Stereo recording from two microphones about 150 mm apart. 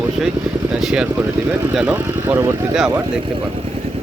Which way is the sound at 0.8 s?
Centre (ahead or behind).